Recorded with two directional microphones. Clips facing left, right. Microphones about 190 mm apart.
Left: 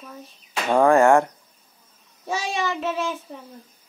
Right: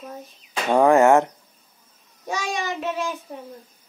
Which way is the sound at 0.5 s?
20° right (ahead or behind).